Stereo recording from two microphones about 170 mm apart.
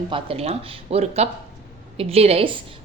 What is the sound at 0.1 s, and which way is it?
A woman's voice, 35° right (ahead or behind).